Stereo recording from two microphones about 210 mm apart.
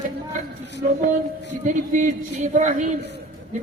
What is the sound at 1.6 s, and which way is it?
A woman's voice, 35° right (ahead or behind).